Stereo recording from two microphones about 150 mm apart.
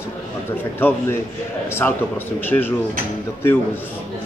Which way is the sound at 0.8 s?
15° left (ahead or behind).